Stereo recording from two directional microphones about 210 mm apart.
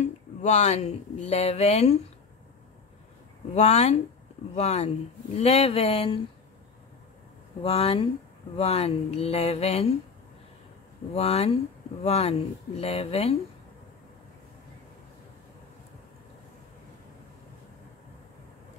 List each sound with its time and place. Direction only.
0.0 s speech: 35° left (ahead or behind)
3.5 s speech: 30° left (ahead or behind)
7.6 s speech: 25° left (ahead or behind)
11.1 s speech: 30° left (ahead or behind)